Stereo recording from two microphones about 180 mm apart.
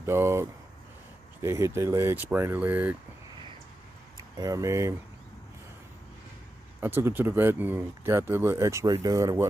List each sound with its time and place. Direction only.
0.0 s speech: 15° right (ahead or behind)
4.4 s speech: 20° right (ahead or behind)
6.8 s speech: 15° right (ahead or behind)